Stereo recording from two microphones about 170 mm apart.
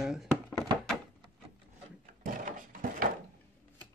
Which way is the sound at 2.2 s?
55° right (ahead or behind).